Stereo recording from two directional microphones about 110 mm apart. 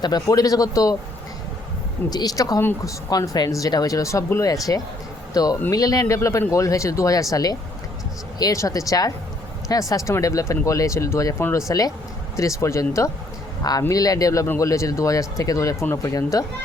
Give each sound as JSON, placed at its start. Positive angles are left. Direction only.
{"t": 0.0, "sound": "speech", "side_deg": 35}
{"t": 2.0, "sound": "speech", "side_deg": 35}
{"t": 2.6, "sound": "speech", "side_deg": 20}
{"t": 3.1, "sound": "speech", "side_deg": 35}